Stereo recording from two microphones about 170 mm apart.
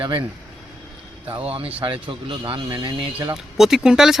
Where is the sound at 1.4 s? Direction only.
35° right (ahead or behind).